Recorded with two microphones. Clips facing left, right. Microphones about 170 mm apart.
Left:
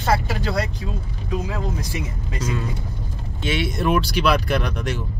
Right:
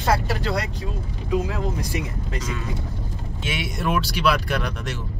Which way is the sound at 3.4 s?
10° right (ahead or behind).